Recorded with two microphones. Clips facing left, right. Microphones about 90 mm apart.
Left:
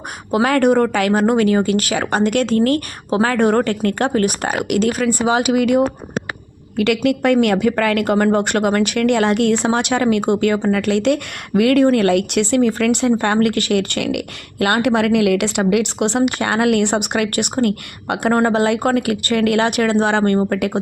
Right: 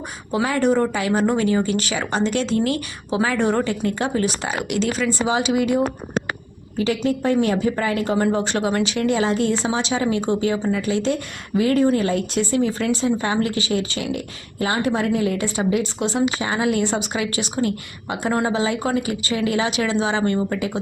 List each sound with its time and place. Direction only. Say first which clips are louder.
0.3 s a woman's voice: left 5 dB; 60° left (ahead or behind)
6.7 s a woman's voice: left 4 dB; 70° left (ahead or behind)